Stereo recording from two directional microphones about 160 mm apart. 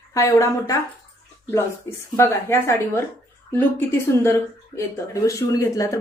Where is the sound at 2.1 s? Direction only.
15° left (ahead or behind).